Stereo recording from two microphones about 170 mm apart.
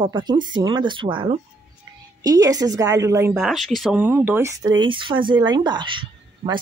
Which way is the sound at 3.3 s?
Centre (ahead or behind).